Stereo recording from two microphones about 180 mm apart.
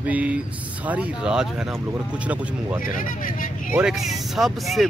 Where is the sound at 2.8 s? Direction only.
50° left (ahead or behind).